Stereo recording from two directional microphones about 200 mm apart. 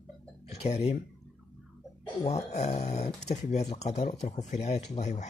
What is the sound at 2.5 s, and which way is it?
Speech, 35° left (ahead or behind).